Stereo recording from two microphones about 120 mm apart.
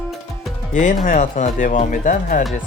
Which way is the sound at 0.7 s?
90° left.